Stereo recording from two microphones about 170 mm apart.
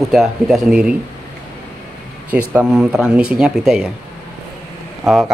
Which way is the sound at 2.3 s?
10° right (ahead or behind).